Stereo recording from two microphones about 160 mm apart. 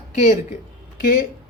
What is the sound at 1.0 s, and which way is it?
Speech, 70° left (ahead or behind).